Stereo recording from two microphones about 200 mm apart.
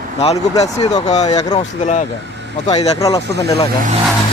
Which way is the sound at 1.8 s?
35° left (ahead or behind).